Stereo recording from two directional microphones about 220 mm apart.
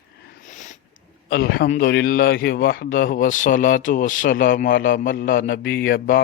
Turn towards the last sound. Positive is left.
turn(degrees=40)  # may be behind; listen again after turning